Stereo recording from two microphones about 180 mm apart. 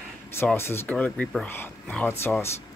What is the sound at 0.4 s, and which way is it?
Speech, 15° left (ahead or behind).